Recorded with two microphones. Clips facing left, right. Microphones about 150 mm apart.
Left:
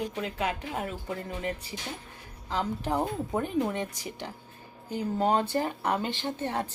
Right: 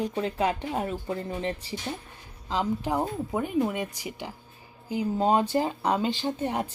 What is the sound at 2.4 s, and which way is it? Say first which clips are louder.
Speech: right 3 dB; 15° right (ahead or behind).